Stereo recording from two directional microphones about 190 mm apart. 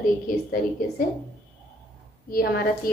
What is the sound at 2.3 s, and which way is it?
Speech, 50° left (ahead or behind).